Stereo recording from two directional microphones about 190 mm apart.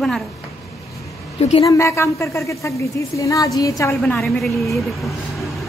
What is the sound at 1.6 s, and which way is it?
Speech, 15° left (ahead or behind).